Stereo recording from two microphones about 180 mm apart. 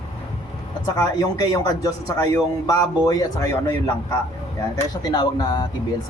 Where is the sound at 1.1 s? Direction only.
20° left (ahead or behind).